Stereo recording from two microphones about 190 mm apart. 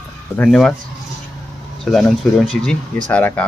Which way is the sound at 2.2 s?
Centre (ahead or behind).